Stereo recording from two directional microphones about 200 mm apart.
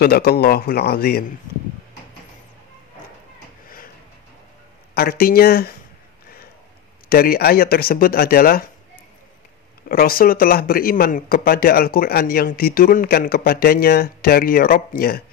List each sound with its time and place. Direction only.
0.0 s a man's voice: 50° left (ahead or behind)
3.6 s a sound: 45° left (ahead or behind)
4.9 s a man's voice: 50° left (ahead or behind)
7.1 s a man's voice: 50° left (ahead or behind)
9.8 s a man's voice: 45° left (ahead or behind)